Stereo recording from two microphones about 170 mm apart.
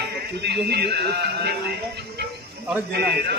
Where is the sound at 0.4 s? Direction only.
75° right (ahead or behind).